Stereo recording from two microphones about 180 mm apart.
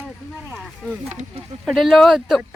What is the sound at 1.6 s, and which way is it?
Speech, centre (ahead or behind).